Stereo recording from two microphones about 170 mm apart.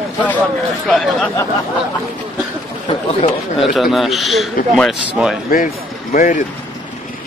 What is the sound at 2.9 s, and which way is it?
Chatter, 35° left (ahead or behind).